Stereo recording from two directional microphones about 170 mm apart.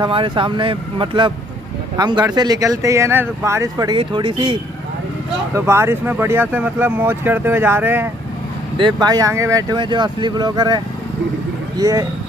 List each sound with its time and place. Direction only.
0.0 s speech: 30° right (ahead or behind)
5.5 s speech: 15° right (ahead or behind)
8.7 s speech: 25° right (ahead or behind)
11.8 s speech: 20° right (ahead or behind)